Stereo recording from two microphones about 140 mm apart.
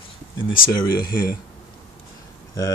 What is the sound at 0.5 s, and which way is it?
Speech, 90° left.